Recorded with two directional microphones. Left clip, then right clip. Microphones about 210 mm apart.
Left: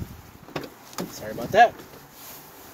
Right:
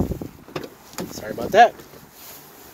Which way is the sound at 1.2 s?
45° right (ahead or behind).